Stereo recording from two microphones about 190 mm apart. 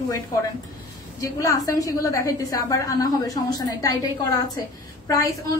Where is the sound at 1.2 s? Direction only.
15° left (ahead or behind).